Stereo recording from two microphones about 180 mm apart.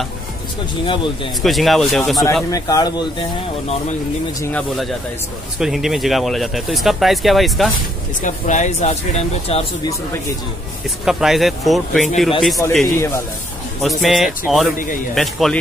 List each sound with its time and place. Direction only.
0.8 s speech: 30° left (ahead or behind)
1.4 s speech: centre (ahead or behind)
2.5 s speech: 20° left (ahead or behind)
4.4 s speech: 10° left (ahead or behind)
5.6 s speech: centre (ahead or behind)
8.2 s speech: 45° left (ahead or behind)
11.1 s speech: centre (ahead or behind)
12.8 s speech: 15° left (ahead or behind)
14.0 s speech: centre (ahead or behind)